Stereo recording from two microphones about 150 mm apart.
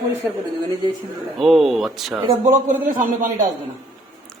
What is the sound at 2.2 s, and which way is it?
Speech, 50° right (ahead or behind).